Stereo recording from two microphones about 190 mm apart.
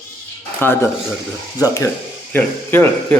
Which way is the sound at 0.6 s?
10° left (ahead or behind).